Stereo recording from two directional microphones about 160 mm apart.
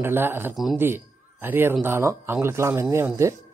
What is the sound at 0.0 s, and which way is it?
A woman's voice, 15° right (ahead or behind).